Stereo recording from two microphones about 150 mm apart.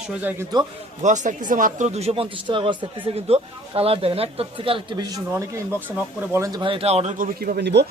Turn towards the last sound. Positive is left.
turn(degrees=-90)